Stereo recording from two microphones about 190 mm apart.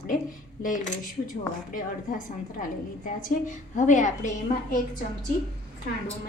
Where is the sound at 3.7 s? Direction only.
40° left (ahead or behind).